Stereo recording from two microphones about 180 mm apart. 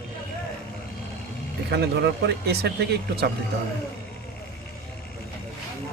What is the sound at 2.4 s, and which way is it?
Speech, 65° right (ahead or behind).